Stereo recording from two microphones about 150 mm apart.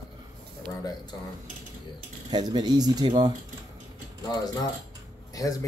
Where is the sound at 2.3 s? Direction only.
30° right (ahead or behind).